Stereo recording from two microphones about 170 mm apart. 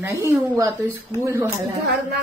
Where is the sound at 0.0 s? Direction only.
20° right (ahead or behind).